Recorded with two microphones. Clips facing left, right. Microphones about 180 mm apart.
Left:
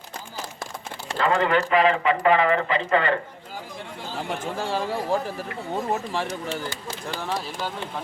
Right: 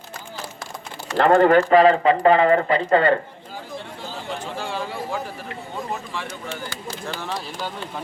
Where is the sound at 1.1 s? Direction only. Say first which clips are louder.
Right 7 dB; 50° right (ahead or behind).